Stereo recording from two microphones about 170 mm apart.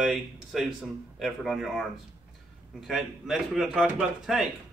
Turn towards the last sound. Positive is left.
turn(degrees=-5)  # may be behind; listen again after turning